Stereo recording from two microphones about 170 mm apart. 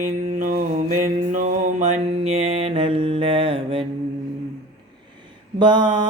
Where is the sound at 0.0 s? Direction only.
50° right (ahead or behind); by 3.8 s 35° right (ahead or behind).